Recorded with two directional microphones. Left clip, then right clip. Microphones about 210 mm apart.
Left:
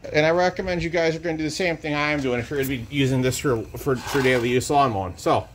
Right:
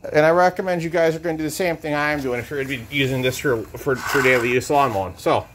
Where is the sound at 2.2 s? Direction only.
15° left (ahead or behind).